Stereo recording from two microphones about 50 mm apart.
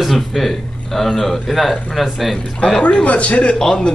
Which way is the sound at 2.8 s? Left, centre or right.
Left.